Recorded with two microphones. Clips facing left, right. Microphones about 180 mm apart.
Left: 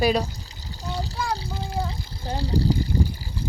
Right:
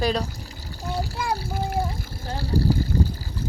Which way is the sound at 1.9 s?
15° left (ahead or behind).